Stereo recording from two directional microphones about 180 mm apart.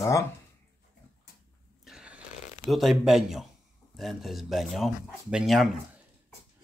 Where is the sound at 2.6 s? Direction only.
Centre (ahead or behind).